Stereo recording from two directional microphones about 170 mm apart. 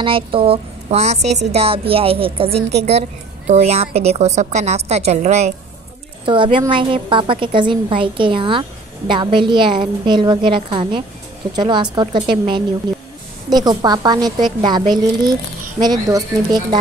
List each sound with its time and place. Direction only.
0.0 s a woman's voice: 30° right (ahead or behind)
6.2 s a woman's voice: 30° right (ahead or behind)